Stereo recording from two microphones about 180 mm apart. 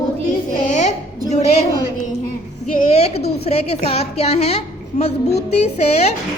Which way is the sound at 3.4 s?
35° left (ahead or behind).